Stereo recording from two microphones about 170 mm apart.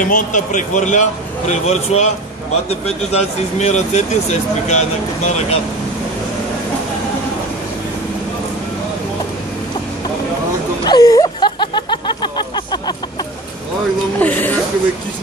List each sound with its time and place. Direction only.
0.0 s speech: 50° left (ahead or behind)
10.9 s a sound: 20° left (ahead or behind)
14.2 s music: 10° left (ahead or behind)